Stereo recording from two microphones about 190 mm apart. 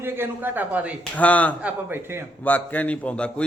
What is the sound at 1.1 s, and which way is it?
A man's voice, 10° left (ahead or behind).